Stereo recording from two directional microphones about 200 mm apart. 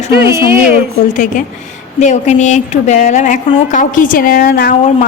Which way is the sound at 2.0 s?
35° left (ahead or behind).